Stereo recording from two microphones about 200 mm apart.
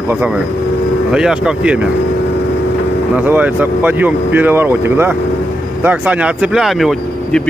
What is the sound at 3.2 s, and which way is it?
Speech, 10° right (ahead or behind).